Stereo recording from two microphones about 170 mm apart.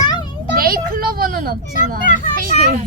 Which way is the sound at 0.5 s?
60° right (ahead or behind).